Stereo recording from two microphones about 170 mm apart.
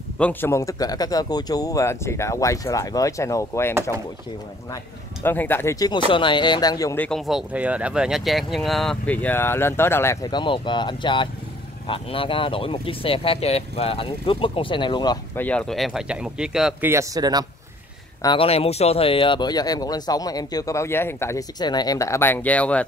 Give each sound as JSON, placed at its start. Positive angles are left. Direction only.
{"t": 0.2, "sound": "speech", "side_deg": 10}
{"t": 5.2, "sound": "speech", "side_deg": 10}
{"t": 7.0, "sound": "speech", "side_deg": 0}
{"t": 10.3, "sound": "speech", "side_deg": 30}
{"t": 15.3, "sound": "speech", "side_deg": 10}
{"t": 16.9, "sound": "speech", "side_deg": -20}
{"t": 18.2, "sound": "speech", "side_deg": 30}